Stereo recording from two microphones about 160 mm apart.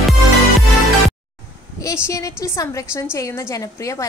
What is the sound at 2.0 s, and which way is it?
A woman's voice, 20° left (ahead or behind).